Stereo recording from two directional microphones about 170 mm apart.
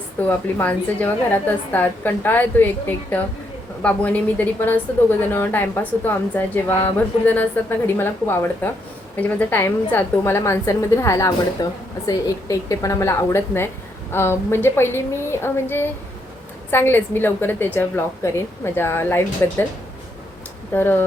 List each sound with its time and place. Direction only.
0.2 s a woman's voice: 10° left (ahead or behind)
3.8 s a woman's voice: 10° left (ahead or behind)
20.7 s a woman's voice: 10° left (ahead or behind)